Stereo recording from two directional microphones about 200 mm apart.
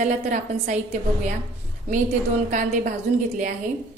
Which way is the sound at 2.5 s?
40° right (ahead or behind).